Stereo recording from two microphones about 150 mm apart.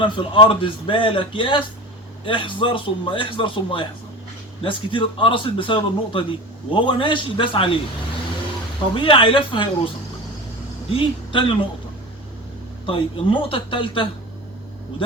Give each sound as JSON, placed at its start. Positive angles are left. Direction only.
{"t": 0.0, "sound": "a man's voice", "side_deg": 35}
{"t": 9.0, "sound": "a man's voice", "side_deg": 35}
{"t": 12.8, "sound": "a man's voice", "side_deg": 35}